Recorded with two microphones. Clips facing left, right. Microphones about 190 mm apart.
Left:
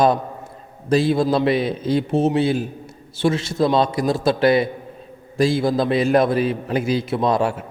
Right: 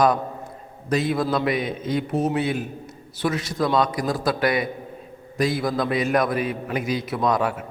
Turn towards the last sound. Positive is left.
turn(degrees=30)  # may be behind; listen again after turning